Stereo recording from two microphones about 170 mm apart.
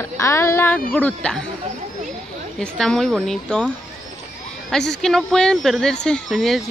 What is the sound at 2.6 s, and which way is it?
Speech, 5° left (ahead or behind).